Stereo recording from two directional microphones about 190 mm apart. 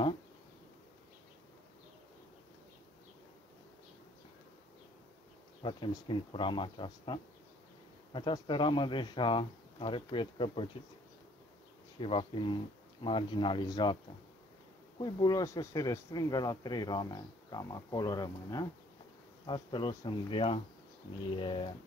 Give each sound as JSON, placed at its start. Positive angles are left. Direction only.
{"t": 5.6, "sound": "speech", "side_deg": 25}
{"t": 12.0, "sound": "speech", "side_deg": 25}
{"t": 15.0, "sound": "speech", "side_deg": 20}